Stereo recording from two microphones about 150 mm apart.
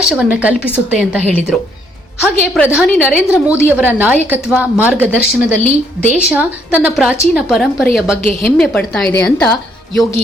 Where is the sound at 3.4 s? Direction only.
10° right (ahead or behind).